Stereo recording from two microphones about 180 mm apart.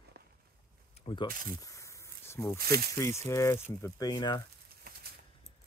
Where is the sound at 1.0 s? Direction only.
30° left (ahead or behind).